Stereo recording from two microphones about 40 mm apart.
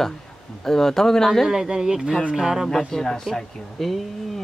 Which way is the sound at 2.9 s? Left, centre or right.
Centre.